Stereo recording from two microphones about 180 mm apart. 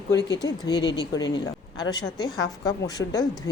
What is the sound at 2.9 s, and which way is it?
Speech, 20° left (ahead or behind).